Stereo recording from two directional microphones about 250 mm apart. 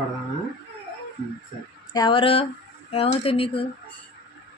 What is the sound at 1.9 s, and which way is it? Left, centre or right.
Speech, centre.